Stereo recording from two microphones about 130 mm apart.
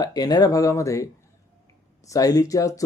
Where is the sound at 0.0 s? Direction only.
30° left (ahead or behind).